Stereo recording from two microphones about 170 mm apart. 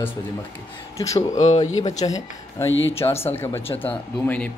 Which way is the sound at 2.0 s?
20° left (ahead or behind).